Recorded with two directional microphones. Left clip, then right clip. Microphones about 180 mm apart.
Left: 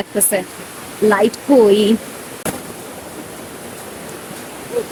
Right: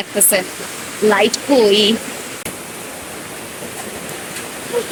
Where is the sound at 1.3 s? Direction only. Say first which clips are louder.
Left 1 dB; 40° left (ahead or behind).